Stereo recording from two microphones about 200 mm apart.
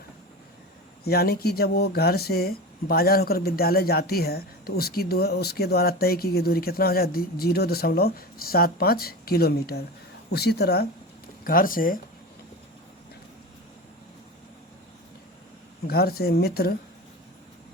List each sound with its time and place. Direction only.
1.0 s speech: 50° left (ahead or behind)
15.9 s speech: 50° left (ahead or behind)